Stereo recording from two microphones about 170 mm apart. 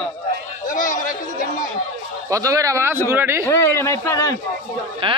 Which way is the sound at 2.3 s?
20° right (ahead or behind).